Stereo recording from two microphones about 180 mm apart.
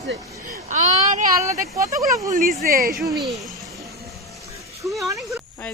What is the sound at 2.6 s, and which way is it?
Speech, 55° right (ahead or behind).